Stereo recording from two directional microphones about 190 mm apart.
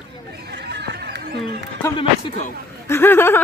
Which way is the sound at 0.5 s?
65° right (ahead or behind).